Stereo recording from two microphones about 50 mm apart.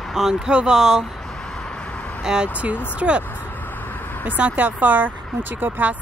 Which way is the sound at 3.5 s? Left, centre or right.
Left.